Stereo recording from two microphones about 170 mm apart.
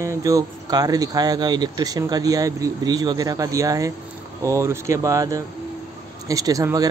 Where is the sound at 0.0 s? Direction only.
20° right (ahead or behind).